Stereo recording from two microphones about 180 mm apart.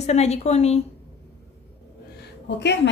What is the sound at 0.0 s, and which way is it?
Speech, 35° left (ahead or behind).